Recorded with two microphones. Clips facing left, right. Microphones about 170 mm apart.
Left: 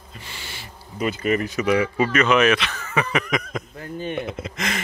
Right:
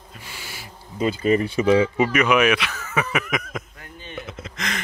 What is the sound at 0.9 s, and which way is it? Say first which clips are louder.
Speech: right 3 dB; 30° right (ahead or behind).